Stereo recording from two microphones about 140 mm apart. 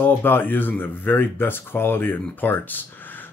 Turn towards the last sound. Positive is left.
turn(degrees=15)  # may be behind; listen again after turning